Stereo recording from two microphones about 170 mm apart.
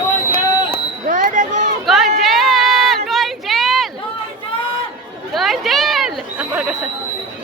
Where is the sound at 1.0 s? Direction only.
50° right (ahead or behind).